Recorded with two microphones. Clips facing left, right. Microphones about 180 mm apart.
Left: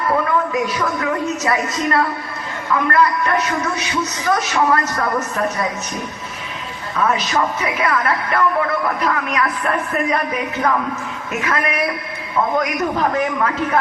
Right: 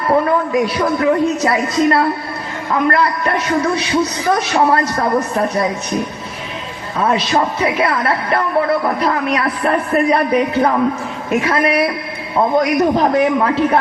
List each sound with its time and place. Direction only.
0.3 s speech: 30° right (ahead or behind)
7.0 s speech: 30° right (ahead or behind)